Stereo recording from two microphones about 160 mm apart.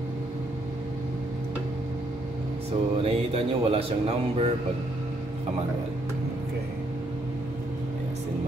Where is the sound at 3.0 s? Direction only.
35° right (ahead or behind).